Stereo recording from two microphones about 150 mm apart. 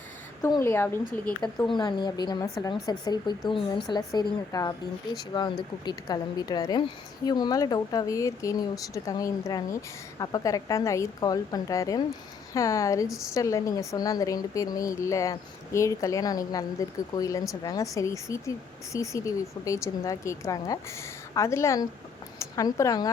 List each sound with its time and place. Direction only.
0.6 s speech: 15° left (ahead or behind)
1.7 s a woman's voice: 30° left (ahead or behind)